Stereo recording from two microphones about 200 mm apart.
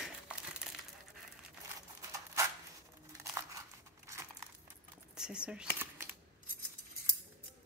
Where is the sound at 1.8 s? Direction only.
15° right (ahead or behind).